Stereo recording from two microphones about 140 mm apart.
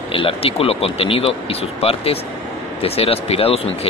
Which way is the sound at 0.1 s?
40° left (ahead or behind).